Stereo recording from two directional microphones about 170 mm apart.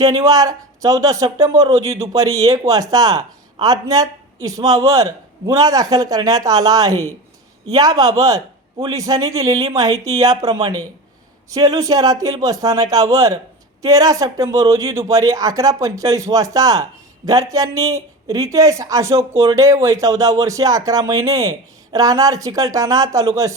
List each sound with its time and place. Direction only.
0.0 s speech: 20° right (ahead or behind)